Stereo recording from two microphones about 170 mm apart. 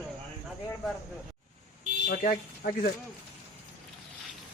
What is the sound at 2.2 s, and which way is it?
Speech, 55° left (ahead or behind).